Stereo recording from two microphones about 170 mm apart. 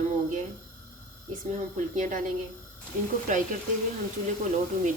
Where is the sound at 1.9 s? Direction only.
50° right (ahead or behind).